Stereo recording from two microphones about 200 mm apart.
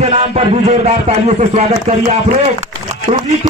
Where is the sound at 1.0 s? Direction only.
35° right (ahead or behind).